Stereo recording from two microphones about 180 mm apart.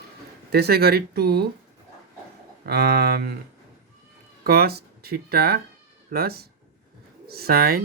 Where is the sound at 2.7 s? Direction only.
60° right (ahead or behind).